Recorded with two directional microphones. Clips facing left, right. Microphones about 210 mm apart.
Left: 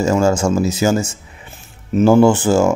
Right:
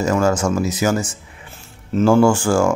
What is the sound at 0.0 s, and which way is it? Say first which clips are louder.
Speech: left 2 dB; 25° left (ahead or behind).